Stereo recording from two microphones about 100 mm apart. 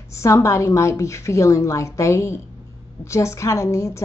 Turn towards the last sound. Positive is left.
turn(degrees=30)  # may be behind; listen again after turning